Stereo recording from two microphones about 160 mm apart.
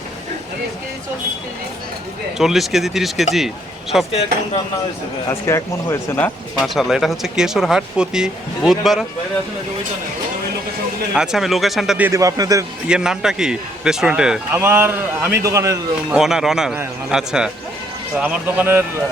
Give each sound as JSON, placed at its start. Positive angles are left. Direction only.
{"t": 2.4, "sound": "speech", "side_deg": 0}
{"t": 5.3, "sound": "speech", "side_deg": 15}
{"t": 6.6, "sound": "speech", "side_deg": 0}
{"t": 11.1, "sound": "speech", "side_deg": -5}
{"t": 12.9, "sound": "a man's voice", "side_deg": -5}
{"t": 16.1, "sound": "a man's voice", "side_deg": -5}